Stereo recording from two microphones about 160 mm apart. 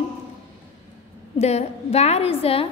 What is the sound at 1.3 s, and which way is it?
A woman's voice, 40° left (ahead or behind).